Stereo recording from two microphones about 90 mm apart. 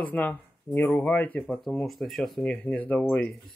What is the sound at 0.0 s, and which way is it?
Speech, 15° left (ahead or behind).